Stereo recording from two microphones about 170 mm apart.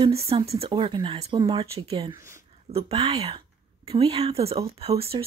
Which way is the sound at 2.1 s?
15° right (ahead or behind).